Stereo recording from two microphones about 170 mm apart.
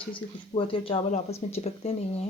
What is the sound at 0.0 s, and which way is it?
Speech, 30° left (ahead or behind).